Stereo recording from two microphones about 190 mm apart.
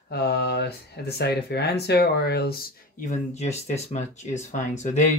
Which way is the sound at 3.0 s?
35° left (ahead or behind).